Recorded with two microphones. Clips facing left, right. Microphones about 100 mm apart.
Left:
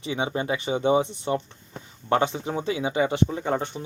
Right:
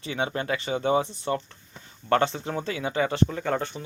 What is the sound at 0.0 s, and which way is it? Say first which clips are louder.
Speech: left 2 dB; 20° left (ahead or behind).